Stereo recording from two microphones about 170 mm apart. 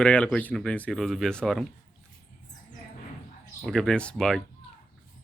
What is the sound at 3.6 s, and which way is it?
Speech, 5° left (ahead or behind).